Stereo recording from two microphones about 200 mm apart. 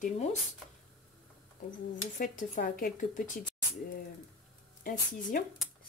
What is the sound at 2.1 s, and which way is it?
Speech, 45° left (ahead or behind).